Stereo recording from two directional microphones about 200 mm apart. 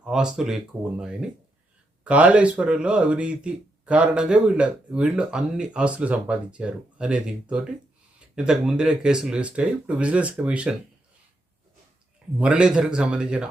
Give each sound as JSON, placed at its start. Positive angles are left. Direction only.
{"t": 0.0, "sound": "speech", "side_deg": -5}
{"t": 12.4, "sound": "speech", "side_deg": -5}